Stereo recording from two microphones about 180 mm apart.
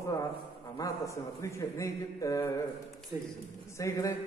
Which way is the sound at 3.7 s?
15° left (ahead or behind).